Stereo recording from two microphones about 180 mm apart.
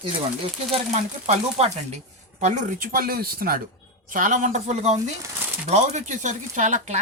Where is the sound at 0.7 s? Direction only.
35° right (ahead or behind).